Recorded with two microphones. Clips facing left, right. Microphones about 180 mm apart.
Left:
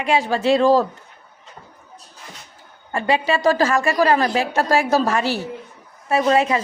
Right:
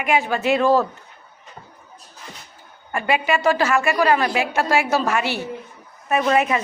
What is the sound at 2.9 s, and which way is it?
A woman's voice, 35° left (ahead or behind).